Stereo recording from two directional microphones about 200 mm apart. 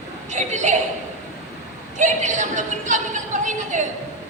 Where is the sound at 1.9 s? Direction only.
40° right (ahead or behind).